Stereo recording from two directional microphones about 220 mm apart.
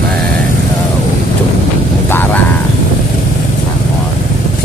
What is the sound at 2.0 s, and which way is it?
Vehicle, 10° left (ahead or behind).